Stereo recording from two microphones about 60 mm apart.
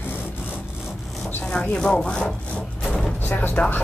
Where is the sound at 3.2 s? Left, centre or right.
Left.